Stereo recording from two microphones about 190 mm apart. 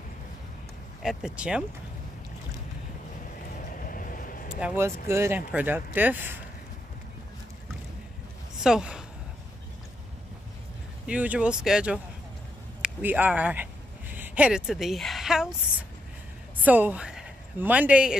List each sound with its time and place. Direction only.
1.0 s speech: 5° right (ahead or behind)
3.5 s vehicle: 45° left (ahead or behind)
4.6 s speech: 10° right (ahead or behind)
8.5 s speech: 5° right (ahead or behind)
11.1 s speech: 5° right (ahead or behind)
16.5 s a woman's voice: 10° right (ahead or behind)